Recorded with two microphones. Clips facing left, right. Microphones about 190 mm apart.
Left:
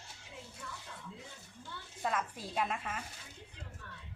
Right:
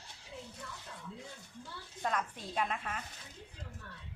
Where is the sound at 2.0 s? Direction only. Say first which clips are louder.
Even; 5° left (ahead or behind).